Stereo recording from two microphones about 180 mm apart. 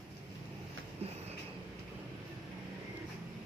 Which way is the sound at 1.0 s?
35° right (ahead or behind).